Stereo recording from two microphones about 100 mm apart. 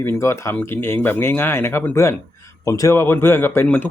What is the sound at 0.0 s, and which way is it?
Speech, 25° left (ahead or behind).